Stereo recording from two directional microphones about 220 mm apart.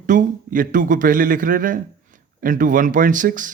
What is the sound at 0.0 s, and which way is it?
Speech, 35° right (ahead or behind).